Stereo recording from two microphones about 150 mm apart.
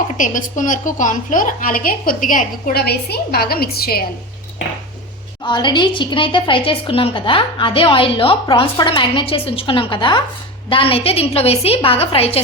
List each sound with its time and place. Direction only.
0.2 s a woman's voice: 60° left (ahead or behind); by 4.0 s 90° left
5.5 s a woman's voice: 30° left (ahead or behind)